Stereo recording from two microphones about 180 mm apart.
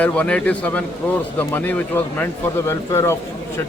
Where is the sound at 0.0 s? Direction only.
10° left (ahead or behind).